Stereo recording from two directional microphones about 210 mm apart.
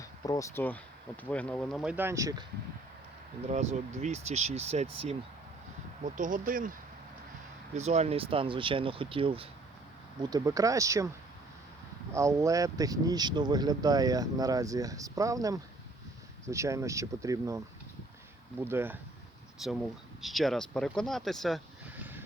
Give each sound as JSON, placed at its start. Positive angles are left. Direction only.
{"t": 0.0, "sound": "speech", "side_deg": 15}
{"t": 3.5, "sound": "speech", "side_deg": -30}
{"t": 6.1, "sound": "speech", "side_deg": -40}
{"t": 7.8, "sound": "speech", "side_deg": -30}
{"t": 12.1, "sound": "speech", "side_deg": -15}
{"t": 18.6, "sound": "speech", "side_deg": -10}